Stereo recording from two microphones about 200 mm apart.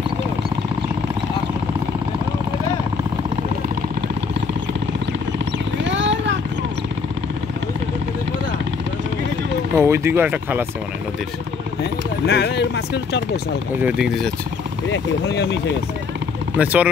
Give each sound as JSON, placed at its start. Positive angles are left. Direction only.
{"t": 5.9, "sound": "vehicle", "side_deg": -65}
{"t": 9.8, "sound": "speech", "side_deg": -10}
{"t": 12.3, "sound": "speech", "side_deg": 55}
{"t": 13.7, "sound": "speech", "side_deg": -5}
{"t": 14.9, "sound": "speech", "side_deg": 65}
{"t": 16.5, "sound": "speech", "side_deg": -5}